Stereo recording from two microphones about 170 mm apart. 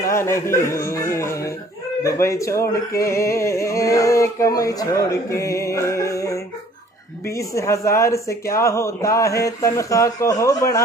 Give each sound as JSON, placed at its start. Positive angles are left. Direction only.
{"t": 0.0, "sound": "music", "side_deg": 15}
{"t": 2.0, "sound": "speech", "side_deg": 20}